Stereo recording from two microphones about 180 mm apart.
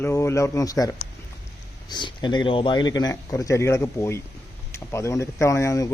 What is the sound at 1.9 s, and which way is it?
A man's voice, 25° left (ahead or behind).